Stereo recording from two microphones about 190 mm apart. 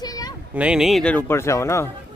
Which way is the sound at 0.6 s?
5° right (ahead or behind).